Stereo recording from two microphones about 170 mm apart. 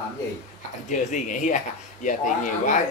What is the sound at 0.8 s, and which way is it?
A man's voice, 45° left (ahead or behind).